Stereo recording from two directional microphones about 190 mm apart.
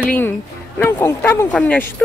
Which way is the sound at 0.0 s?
10° left (ahead or behind).